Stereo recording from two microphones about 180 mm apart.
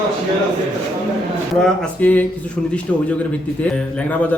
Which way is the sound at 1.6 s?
5° left (ahead or behind).